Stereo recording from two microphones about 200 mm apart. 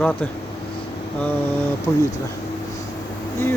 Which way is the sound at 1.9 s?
15° left (ahead or behind).